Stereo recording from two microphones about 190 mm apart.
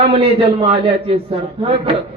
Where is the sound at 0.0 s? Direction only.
30° right (ahead or behind).